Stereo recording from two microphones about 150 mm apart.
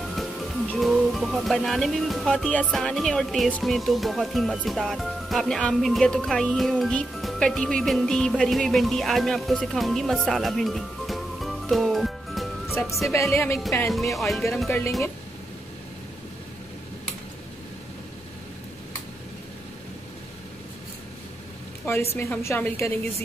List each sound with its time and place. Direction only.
0.1 s speech: centre (ahead or behind)
13.1 s a woman's voice: 20° left (ahead or behind)
13.8 s speech: centre (ahead or behind)
22.1 s a woman's voice: 20° left (ahead or behind)